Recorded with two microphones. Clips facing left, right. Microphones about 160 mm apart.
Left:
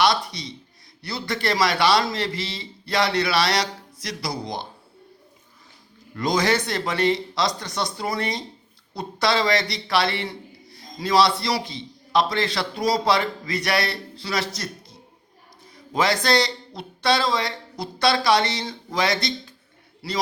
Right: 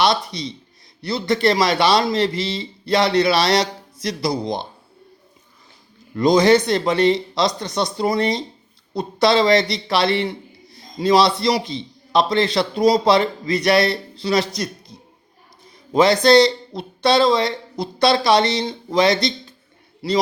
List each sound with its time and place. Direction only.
0.0 s a man's voice: 25° right (ahead or behind)
6.1 s a man's voice: 20° right (ahead or behind)